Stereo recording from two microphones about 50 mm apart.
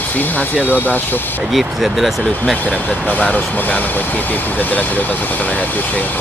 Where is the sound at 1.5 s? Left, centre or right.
Centre.